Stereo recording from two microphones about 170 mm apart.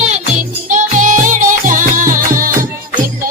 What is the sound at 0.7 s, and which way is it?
Music, 50° right (ahead or behind).